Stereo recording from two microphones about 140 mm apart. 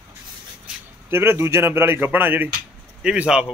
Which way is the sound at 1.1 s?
15° right (ahead or behind).